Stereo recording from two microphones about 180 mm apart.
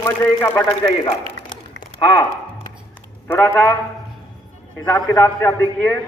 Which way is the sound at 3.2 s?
15° left (ahead or behind).